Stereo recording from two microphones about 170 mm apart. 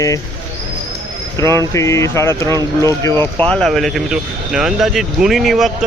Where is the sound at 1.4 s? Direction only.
15° left (ahead or behind).